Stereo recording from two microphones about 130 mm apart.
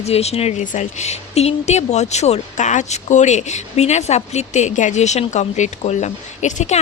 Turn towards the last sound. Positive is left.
turn(degrees=65)  # may be behind; listen again after turning